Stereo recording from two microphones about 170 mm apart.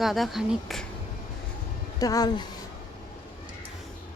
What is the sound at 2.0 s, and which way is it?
Speech, 20° left (ahead or behind).